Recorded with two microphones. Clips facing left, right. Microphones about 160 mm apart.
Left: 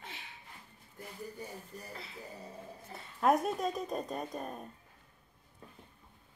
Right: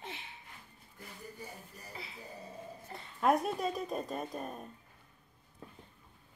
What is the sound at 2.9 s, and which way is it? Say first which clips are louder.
A woman's voice: left 1 dB; centre (ahead or behind).